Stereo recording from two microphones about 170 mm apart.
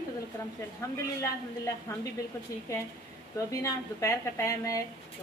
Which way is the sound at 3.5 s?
20° left (ahead or behind).